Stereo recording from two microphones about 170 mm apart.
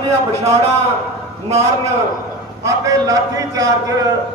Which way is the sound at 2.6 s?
20° right (ahead or behind).